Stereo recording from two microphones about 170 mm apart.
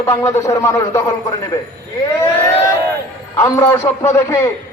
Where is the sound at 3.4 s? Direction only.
15° left (ahead or behind).